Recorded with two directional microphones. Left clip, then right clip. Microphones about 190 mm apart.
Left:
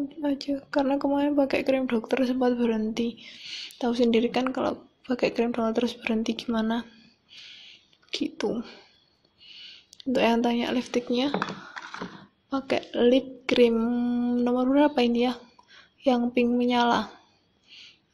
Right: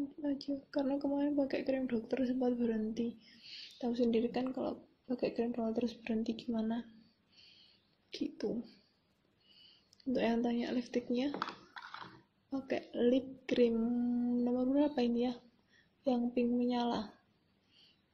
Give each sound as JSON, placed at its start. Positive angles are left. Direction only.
{"t": 0.2, "sound": "a woman's voice", "side_deg": 0}
{"t": 8.1, "sound": "a woman's voice", "side_deg": 0}
{"t": 9.5, "sound": "speech", "side_deg": -5}
{"t": 11.3, "sound": "computer keyboard", "side_deg": 15}
{"t": 12.4, "sound": "a woman's voice", "side_deg": 0}